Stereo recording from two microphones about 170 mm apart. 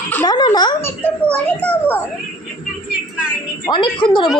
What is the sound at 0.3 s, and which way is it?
Speech, 25° left (ahead or behind).